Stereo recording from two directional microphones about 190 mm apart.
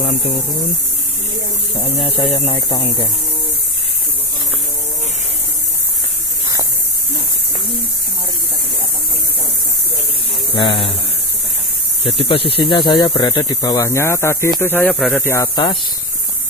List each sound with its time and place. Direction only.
1.8 s speech: 30° left (ahead or behind)
10.5 s speech: 25° left (ahead or behind)
12.0 s speech: 30° left (ahead or behind); by 15.2 s centre (ahead or behind)
15.2 s speech: 15° left (ahead or behind)